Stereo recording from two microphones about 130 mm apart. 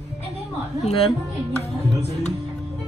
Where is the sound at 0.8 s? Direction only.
50° left (ahead or behind).